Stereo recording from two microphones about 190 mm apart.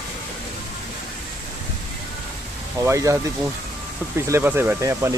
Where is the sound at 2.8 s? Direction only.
15° right (ahead or behind).